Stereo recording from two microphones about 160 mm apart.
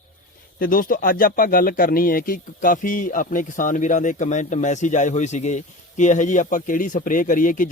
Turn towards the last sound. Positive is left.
turn(degrees=55)  # may be behind; listen again after turning